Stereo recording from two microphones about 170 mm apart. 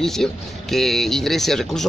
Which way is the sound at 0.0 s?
Centre (ahead or behind).